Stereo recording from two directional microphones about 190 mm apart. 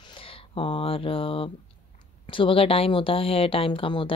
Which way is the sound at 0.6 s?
30° left (ahead or behind).